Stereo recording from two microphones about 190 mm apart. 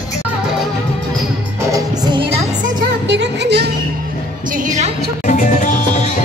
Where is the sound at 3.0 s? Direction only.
65° right (ahead or behind).